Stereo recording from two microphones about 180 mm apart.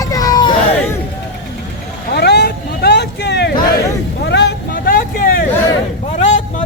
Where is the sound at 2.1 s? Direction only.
65° left (ahead or behind).